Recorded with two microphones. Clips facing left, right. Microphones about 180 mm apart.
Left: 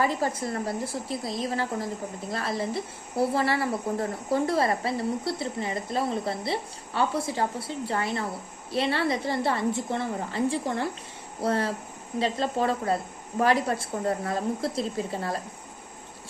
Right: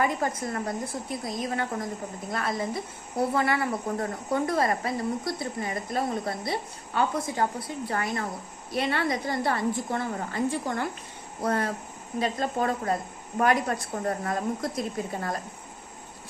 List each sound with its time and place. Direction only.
0.0 s a woman's voice: 30° left (ahead or behind)